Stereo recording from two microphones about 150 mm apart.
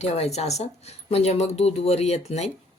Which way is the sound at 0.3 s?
45° left (ahead or behind).